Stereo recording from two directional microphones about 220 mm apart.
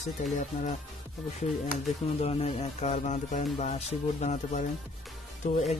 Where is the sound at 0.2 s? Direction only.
35° left (ahead or behind).